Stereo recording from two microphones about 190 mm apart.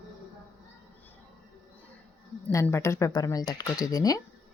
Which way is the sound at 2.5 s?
15° left (ahead or behind).